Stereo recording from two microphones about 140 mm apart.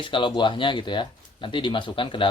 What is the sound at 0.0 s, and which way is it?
Speech, 35° left (ahead or behind).